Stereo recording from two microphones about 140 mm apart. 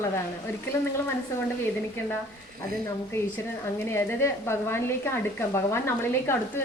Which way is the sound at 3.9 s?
20° left (ahead or behind).